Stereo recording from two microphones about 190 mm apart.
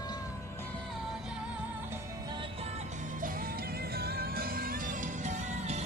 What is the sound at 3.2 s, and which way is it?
Music, 50° right (ahead or behind).